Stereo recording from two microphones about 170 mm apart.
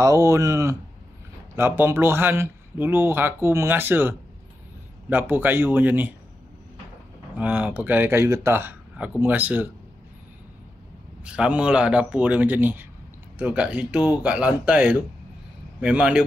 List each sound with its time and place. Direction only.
0.0 s speech: 20° right (ahead or behind)
7.3 s speech: 10° right (ahead or behind)
11.2 s speech: 5° right (ahead or behind)